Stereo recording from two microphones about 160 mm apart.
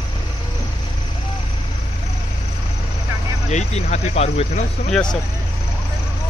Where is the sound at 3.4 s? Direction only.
45° left (ahead or behind).